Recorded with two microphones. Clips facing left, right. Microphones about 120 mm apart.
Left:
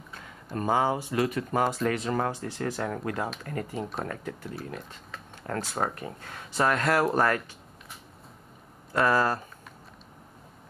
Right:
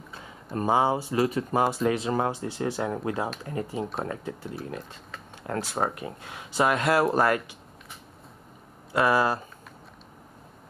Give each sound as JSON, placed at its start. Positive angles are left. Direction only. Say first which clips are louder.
{"t": 0.6, "sound": "speech", "louder": "right 2 dB", "side_deg": -25}
{"t": 3.7, "sound": "speech", "louder": "right 3 dB", "side_deg": 0}
{"t": 4.0, "sound": "speech", "louder": "right 2 dB", "side_deg": -25}
{"t": 5.6, "sound": "speech", "louder": "right 2 dB", "side_deg": -5}
{"t": 8.9, "sound": "speech", "louder": "right 1 dB", "side_deg": -10}